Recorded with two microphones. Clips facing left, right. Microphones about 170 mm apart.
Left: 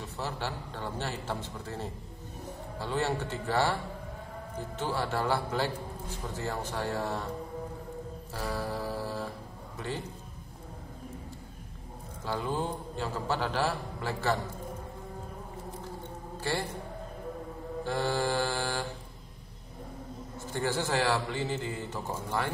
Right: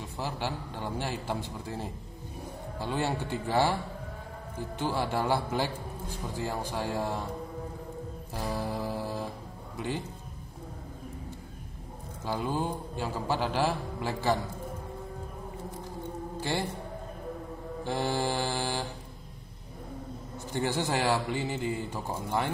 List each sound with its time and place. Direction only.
0.2 s a man's voice: 15° right (ahead or behind)
4.7 s a man's voice: 15° right (ahead or behind)
8.4 s mantra: 20° right (ahead or behind)
12.3 s a man's voice: 10° right (ahead or behind)
16.3 s music: 20° right (ahead or behind)
17.8 s a man's voice: 15° right (ahead or behind)
20.4 s a man's voice: 15° right (ahead or behind)